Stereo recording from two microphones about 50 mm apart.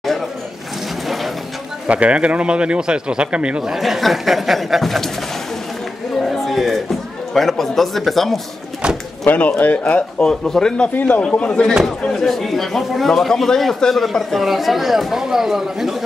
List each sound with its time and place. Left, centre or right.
1.0 s a sound: centre
1.9 s speech: right
3.7 s speech: centre
6.2 s a sound: centre
7.3 s speech: centre
8.8 s speech: centre
9.3 s speech: left
10.4 s a man's voice: centre
11.0 s speech: left
11.2 s speech: left
12.2 s a man's voice: centre
14.4 s speech: centre